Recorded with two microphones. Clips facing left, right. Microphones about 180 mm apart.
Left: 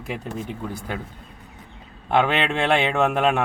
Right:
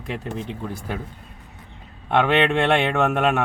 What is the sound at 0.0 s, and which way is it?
Speech, 5° left (ahead or behind).